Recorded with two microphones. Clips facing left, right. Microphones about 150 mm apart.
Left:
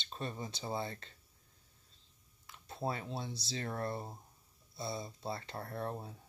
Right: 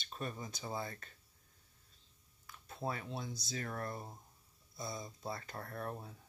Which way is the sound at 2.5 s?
30° left (ahead or behind).